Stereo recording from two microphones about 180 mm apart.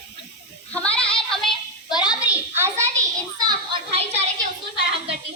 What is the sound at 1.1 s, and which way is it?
Child singing, 5° left (ahead or behind).